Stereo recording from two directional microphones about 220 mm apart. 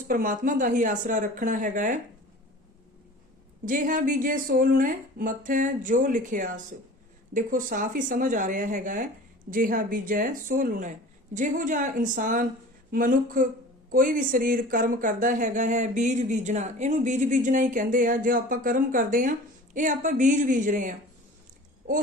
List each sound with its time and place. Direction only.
0.1 s speech: 40° right (ahead or behind)
3.7 s speech: 40° right (ahead or behind)